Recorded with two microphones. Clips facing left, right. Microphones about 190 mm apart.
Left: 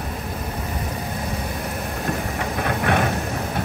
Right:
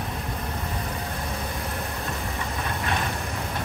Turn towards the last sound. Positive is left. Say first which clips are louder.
# left 8 dB
turn(degrees=65)  # may be behind; listen again after turning